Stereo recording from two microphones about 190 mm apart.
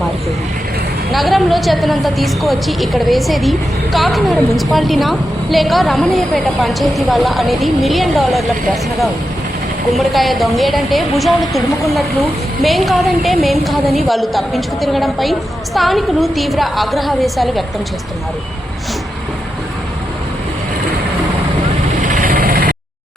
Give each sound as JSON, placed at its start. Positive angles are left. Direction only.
{"t": 1.1, "sound": "a woman's voice", "side_deg": 0}
{"t": 22.0, "sound": "vehicle", "side_deg": -45}